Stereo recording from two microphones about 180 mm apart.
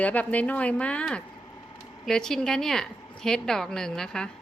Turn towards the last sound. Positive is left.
turn(degrees=5)  # may be behind; listen again after turning